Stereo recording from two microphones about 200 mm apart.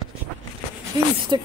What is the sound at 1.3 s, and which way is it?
Speech, 20° right (ahead or behind).